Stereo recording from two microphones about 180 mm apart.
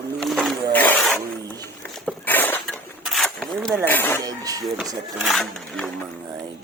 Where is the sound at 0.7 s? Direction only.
10° left (ahead or behind).